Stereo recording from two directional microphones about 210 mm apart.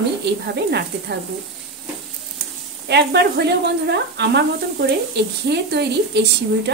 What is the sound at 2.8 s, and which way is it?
Speech, 50° right (ahead or behind).